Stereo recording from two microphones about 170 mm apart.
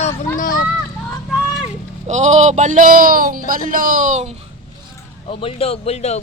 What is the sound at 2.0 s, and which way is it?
Speech, 45° right (ahead or behind).